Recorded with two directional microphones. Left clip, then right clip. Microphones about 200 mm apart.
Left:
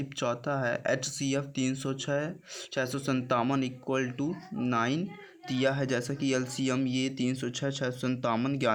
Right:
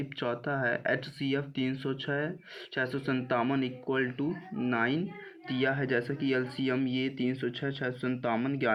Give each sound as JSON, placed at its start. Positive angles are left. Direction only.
{"t": 0.2, "sound": "speech", "side_deg": 25}